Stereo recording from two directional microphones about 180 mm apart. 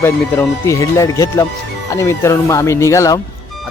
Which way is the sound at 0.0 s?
15° left (ahead or behind).